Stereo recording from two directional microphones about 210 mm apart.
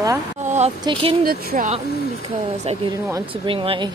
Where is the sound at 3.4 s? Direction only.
25° right (ahead or behind).